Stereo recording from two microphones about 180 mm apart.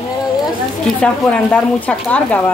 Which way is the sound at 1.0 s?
5° left (ahead or behind).